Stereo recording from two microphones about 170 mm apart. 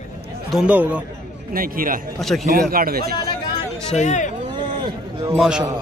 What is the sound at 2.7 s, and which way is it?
Speech, 60° right (ahead or behind).